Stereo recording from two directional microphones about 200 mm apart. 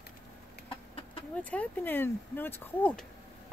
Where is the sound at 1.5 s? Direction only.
10° left (ahead or behind).